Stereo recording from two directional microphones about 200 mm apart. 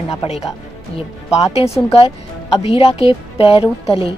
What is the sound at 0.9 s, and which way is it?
Speech, 30° left (ahead or behind).